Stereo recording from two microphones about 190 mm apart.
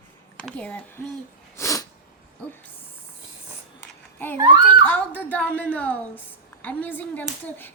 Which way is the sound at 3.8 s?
10° left (ahead or behind).